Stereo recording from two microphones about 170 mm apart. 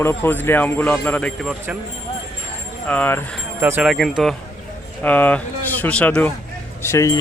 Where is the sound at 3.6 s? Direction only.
10° right (ahead or behind).